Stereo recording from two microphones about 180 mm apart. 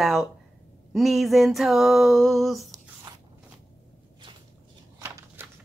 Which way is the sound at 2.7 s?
20° right (ahead or behind).